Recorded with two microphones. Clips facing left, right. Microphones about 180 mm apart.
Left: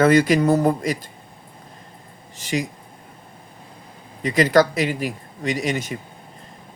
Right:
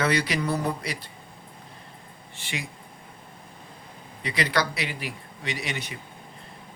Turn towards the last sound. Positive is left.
turn(degrees=45)  # may be behind; listen again after turning